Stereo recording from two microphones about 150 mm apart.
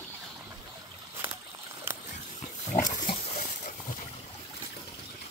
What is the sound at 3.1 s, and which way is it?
Pig, 75° left (ahead or behind).